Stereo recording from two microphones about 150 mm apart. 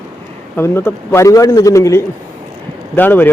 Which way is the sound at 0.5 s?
15° left (ahead or behind).